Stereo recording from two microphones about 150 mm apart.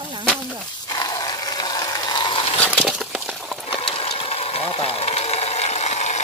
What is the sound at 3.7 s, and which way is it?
Sewing machine, 40° left (ahead or behind).